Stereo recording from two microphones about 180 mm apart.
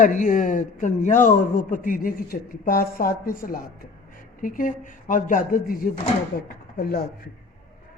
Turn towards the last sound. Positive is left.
turn(degrees=55)  # may be behind; listen again after turning